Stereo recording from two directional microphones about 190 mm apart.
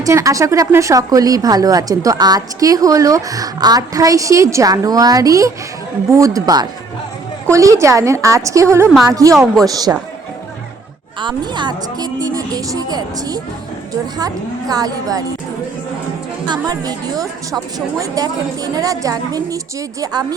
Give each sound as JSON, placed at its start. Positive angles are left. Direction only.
{"t": 0.0, "sound": "speech", "side_deg": -15}
{"t": 11.2, "sound": "speech", "side_deg": -25}
{"t": 16.5, "sound": "speech", "side_deg": -20}